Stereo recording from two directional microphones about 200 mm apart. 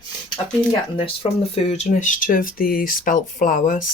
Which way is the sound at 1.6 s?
35° left (ahead or behind).